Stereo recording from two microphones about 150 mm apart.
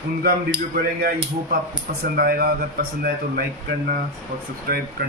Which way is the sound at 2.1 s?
80° right.